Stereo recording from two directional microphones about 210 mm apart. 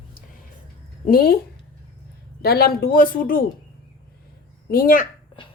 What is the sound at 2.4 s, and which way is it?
A woman's voice, 45° left (ahead or behind).